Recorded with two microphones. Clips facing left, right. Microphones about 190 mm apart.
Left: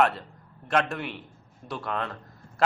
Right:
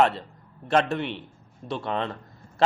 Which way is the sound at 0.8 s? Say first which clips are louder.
Right 5 dB; centre (ahead or behind).